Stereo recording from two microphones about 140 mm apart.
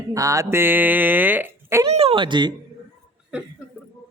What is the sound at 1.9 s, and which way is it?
Speech, 45° right (ahead or behind).